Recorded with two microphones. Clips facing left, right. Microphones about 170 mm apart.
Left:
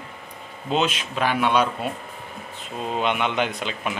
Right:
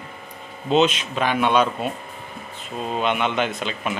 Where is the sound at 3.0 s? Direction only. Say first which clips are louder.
Right 1 dB; 15° left (ahead or behind).